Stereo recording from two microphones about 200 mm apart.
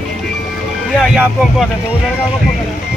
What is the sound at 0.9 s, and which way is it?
Music, centre (ahead or behind).